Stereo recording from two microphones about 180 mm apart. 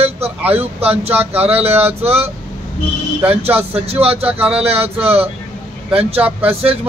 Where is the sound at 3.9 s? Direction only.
35° right (ahead or behind).